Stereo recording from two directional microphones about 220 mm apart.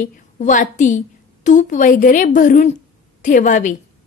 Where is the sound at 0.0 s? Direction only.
35° left (ahead or behind).